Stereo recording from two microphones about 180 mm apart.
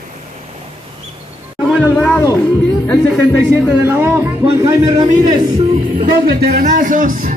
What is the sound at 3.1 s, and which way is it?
A man's voice, 5° right (ahead or behind).